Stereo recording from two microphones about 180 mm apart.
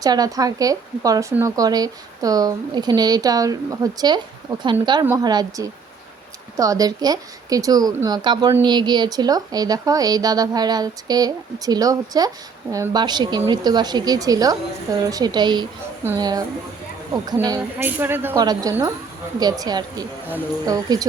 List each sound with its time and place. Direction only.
0.0 s speech: 20° right (ahead or behind)
17.4 s a woman's voice: 20° right (ahead or behind)